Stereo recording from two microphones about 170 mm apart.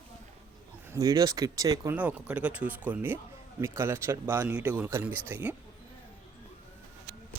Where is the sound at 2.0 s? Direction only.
10° right (ahead or behind).